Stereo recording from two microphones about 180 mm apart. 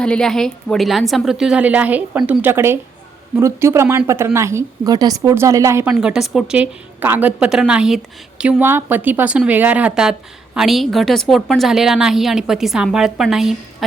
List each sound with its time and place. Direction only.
0.0 s a woman's voice: 5° left (ahead or behind); by 5.9 s 15° right (ahead or behind)
5.9 s speech: 5° right (ahead or behind)